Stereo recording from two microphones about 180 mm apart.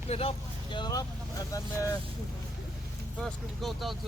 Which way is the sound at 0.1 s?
35° left (ahead or behind).